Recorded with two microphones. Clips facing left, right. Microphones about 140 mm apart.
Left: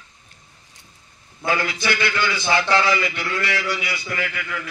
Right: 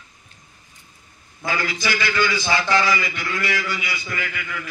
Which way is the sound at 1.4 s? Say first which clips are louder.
Left 2 dB; 60° left (ahead or behind).